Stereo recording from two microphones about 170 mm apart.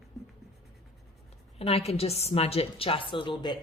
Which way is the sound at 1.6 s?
35° left (ahead or behind).